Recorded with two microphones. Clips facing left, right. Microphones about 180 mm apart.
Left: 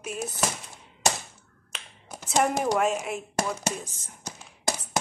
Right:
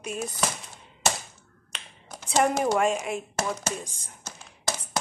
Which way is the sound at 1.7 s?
5° left (ahead or behind).